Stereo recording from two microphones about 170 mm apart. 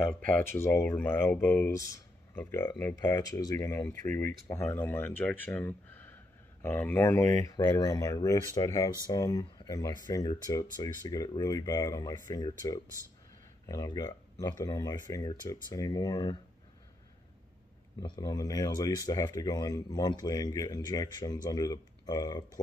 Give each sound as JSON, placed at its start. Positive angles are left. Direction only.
{"t": 0.0, "sound": "speech", "side_deg": 5}
{"t": 18.0, "sound": "speech", "side_deg": 25}